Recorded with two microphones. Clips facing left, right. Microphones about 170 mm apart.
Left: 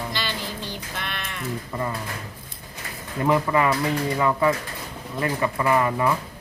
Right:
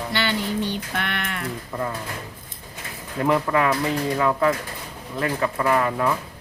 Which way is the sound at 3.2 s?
Centre (ahead or behind).